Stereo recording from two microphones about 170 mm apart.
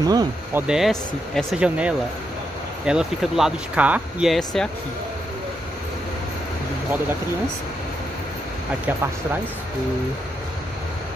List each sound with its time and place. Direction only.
0.0 s speech: 20° right (ahead or behind)
0.6 s speech: 5° right (ahead or behind)